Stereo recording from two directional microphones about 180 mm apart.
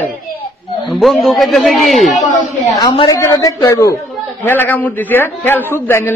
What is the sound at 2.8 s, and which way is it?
A woman's voice, 20° left (ahead or behind).